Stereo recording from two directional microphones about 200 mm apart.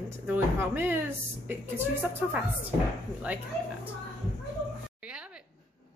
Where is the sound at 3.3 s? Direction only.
5° right (ahead or behind).